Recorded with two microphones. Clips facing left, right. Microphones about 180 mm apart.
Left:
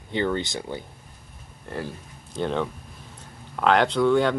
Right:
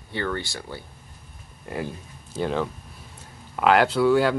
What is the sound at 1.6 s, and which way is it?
Speech, 10° right (ahead or behind).